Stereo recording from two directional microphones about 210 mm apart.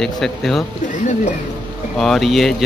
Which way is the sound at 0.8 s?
35° left (ahead or behind).